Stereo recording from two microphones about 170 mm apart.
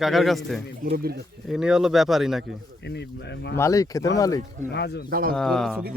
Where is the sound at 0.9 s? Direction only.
65° right (ahead or behind).